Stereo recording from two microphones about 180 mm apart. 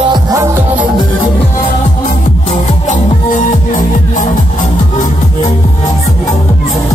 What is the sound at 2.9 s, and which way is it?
Music, 45° left (ahead or behind).